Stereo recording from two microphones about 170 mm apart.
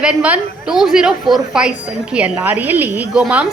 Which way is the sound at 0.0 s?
5° right (ahead or behind).